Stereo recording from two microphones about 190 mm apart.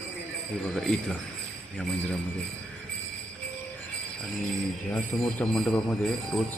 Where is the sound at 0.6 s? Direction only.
5° left (ahead or behind).